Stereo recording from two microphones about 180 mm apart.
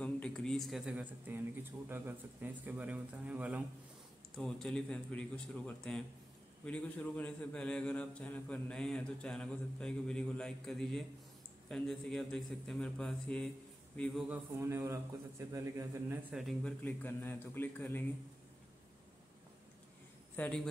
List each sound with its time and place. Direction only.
0.0 s speech: 5° left (ahead or behind)
4.4 s a man's voice: 5° left (ahead or behind)
14.3 s speech: 15° right (ahead or behind)
16.3 s a man's voice: 5° left (ahead or behind)
20.3 s speech: 5° left (ahead or behind)